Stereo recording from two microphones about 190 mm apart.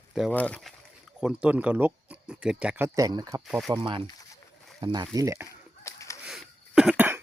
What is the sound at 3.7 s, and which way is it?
Speech, 25° right (ahead or behind).